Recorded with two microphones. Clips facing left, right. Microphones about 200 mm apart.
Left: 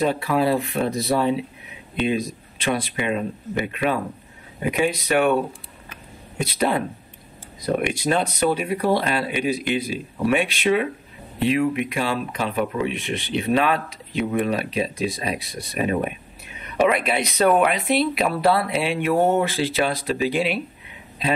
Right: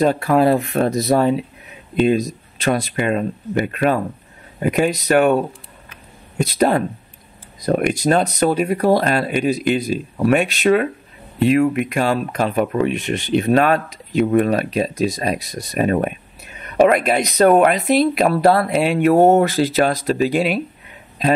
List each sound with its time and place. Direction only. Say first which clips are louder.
0.0 s speech: right 6 dB; 45° right (ahead or behind)
6.4 s speech: right 6 dB; 40° right (ahead or behind)